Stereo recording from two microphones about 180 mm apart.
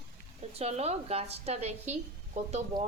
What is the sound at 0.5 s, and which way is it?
A woman's voice, 35° right (ahead or behind).